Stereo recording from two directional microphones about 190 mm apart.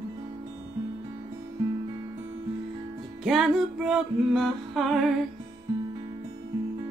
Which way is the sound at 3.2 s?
Centre (ahead or behind).